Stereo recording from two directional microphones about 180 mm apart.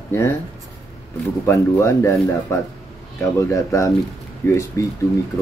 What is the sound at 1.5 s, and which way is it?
Speech, 15° left (ahead or behind).